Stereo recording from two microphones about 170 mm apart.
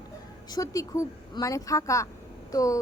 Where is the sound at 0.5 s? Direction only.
20° left (ahead or behind).